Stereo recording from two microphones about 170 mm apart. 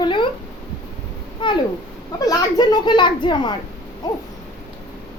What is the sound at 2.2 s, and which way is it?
A woman's voice, 25° left (ahead or behind).